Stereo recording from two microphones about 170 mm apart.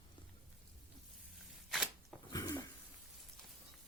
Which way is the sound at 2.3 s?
25° left (ahead or behind).